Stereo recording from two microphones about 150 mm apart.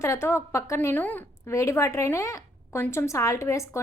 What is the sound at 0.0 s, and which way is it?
A woman's voice, 20° left (ahead or behind).